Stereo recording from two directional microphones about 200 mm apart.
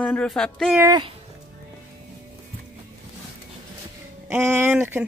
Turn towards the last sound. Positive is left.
turn(degrees=-10)  # may be behind; listen again after turning